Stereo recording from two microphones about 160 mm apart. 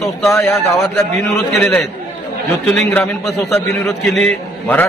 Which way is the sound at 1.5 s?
5° left (ahead or behind).